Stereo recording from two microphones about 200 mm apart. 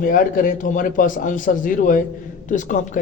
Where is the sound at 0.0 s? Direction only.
45° left (ahead or behind).